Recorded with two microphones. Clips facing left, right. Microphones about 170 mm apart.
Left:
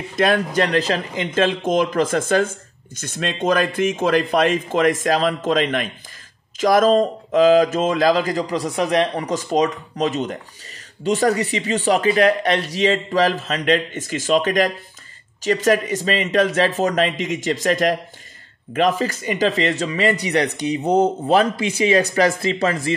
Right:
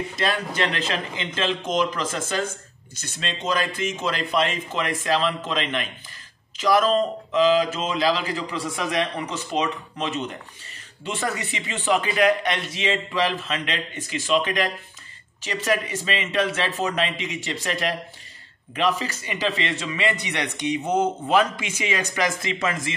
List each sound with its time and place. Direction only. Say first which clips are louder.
0.1 s a man's voice: left 8 dB; 55° left (ahead or behind); by 22.9 s 35° left (ahead or behind)